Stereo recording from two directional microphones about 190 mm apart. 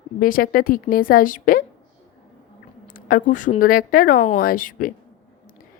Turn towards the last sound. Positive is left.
turn(degrees=45)  # may be behind; listen again after turning